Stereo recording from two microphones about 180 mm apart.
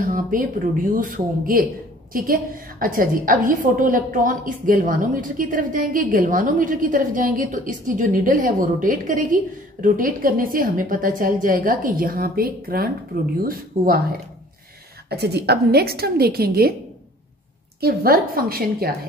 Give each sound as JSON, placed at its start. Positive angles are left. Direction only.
{"t": 0.0, "sound": "a woman's voice", "side_deg": -50}
{"t": 15.0, "sound": "a woman's voice", "side_deg": -65}
{"t": 17.7, "sound": "a woman's voice", "side_deg": -55}